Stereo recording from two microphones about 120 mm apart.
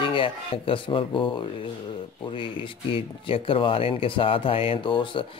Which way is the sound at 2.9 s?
50° left (ahead or behind).